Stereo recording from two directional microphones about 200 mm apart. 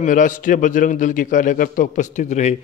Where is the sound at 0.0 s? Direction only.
40° left (ahead or behind).